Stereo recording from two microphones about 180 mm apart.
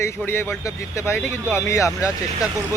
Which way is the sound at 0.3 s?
15° left (ahead or behind).